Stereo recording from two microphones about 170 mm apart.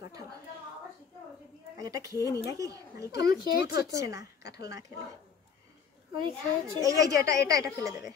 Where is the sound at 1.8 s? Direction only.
20° right (ahead or behind).